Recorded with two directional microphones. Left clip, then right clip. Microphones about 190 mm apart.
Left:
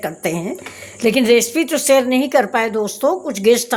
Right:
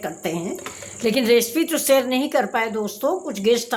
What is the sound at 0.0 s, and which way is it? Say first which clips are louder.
A woman's voice: left 5 dB; 30° left (ahead or behind).